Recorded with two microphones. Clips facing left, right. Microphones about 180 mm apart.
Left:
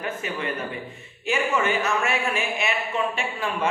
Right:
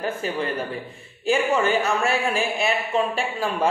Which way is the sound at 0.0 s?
35° right (ahead or behind).